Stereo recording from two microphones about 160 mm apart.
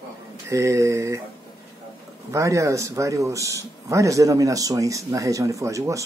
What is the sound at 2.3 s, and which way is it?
A man's voice, 20° right (ahead or behind).